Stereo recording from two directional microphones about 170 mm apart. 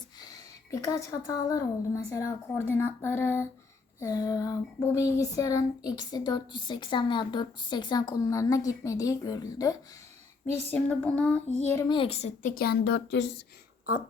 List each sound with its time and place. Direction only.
0.2 s speech: 20° left (ahead or behind)
10.4 s speech: 10° left (ahead or behind)
11.9 s a child's voice: 35° left (ahead or behind)
12.4 s speech: 55° left (ahead or behind); by 13.4 s 90° left